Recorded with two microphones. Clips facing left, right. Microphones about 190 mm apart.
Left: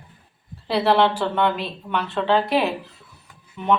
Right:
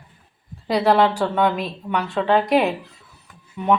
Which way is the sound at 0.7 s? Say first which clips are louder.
Right 1 dB; 10° right (ahead or behind).